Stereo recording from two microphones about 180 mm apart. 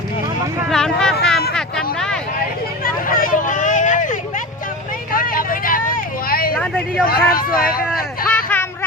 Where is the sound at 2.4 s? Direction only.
55° left (ahead or behind).